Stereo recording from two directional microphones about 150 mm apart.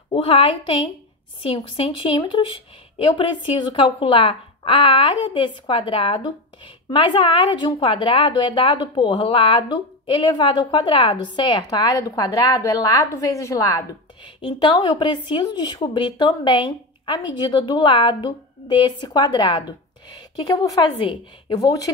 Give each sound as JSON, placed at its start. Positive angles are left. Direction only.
{"t": 0.1, "sound": "speech", "side_deg": 40}
{"t": 21.0, "sound": "speech", "side_deg": 30}